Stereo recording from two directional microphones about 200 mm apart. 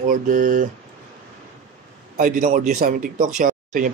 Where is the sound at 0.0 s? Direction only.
40° right (ahead or behind).